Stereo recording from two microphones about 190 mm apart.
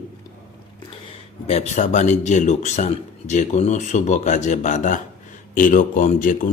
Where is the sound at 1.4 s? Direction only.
35° left (ahead or behind).